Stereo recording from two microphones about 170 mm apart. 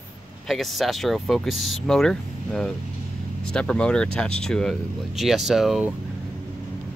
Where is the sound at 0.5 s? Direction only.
Centre (ahead or behind).